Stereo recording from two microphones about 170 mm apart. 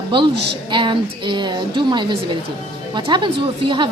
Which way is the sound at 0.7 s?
30° right (ahead or behind).